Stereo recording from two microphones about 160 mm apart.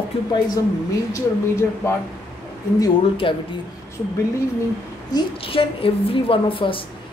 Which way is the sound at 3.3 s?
30° left (ahead or behind).